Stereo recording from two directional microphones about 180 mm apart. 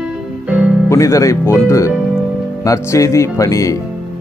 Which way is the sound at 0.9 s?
15° left (ahead or behind).